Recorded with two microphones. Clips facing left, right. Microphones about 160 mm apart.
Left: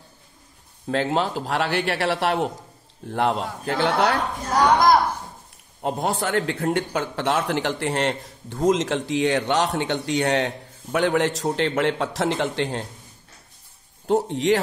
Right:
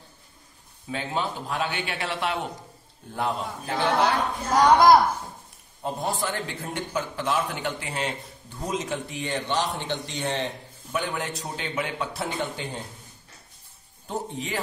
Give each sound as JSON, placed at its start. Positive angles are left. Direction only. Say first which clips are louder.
{"t": 0.8, "sound": "a man's voice", "louder": "left 7 dB", "side_deg": 90}
{"t": 5.8, "sound": "a man's voice", "louder": "left 4 dB", "side_deg": 65}
{"t": 14.0, "sound": "a man's voice", "louder": "left 12 dB", "side_deg": 80}